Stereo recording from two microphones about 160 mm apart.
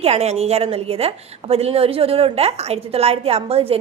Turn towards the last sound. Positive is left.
turn(degrees=-40)  # may be behind; listen again after turning